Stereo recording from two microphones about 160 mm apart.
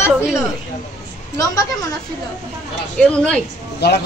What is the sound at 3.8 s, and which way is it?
Speech, 90° left.